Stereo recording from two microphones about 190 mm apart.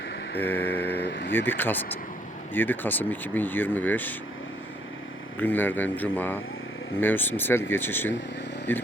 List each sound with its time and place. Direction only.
0.3 s speech: 10° left (ahead or behind)
0.9 s vehicle: 65° left (ahead or behind)
1.3 s speech: 10° left (ahead or behind)
5.4 s speech: 10° left (ahead or behind)